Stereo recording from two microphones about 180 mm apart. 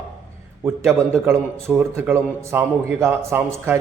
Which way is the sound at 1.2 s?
15° right (ahead or behind).